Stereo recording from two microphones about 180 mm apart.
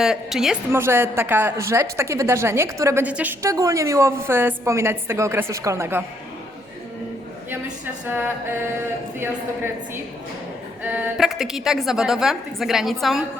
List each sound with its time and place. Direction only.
0.0 s a woman's voice: 5° right (ahead or behind)
0.7 s a woman's voice: 15° right (ahead or behind)
9.1 s a woman's voice: 10° right (ahead or behind)